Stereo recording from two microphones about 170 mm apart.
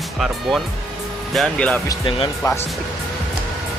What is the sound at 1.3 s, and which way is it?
Speech, 5° left (ahead or behind).